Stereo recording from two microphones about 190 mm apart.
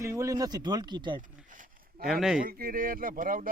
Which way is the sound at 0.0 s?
15° right (ahead or behind).